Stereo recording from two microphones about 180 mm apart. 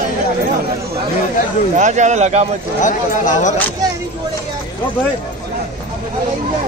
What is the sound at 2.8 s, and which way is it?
Speech, 45° left (ahead or behind).